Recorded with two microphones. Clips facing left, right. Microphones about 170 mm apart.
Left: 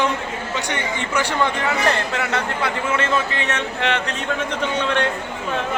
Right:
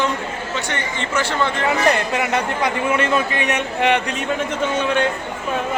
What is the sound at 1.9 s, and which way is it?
A man's voice, 15° right (ahead or behind).